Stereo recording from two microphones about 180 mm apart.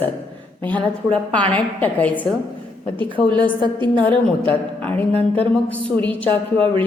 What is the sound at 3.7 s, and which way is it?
Speech, 25° right (ahead or behind).